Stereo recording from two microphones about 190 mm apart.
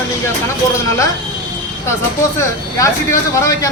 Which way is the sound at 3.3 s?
15° left (ahead or behind).